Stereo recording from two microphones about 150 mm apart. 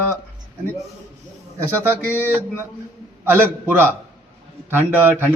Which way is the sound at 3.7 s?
15° right (ahead or behind).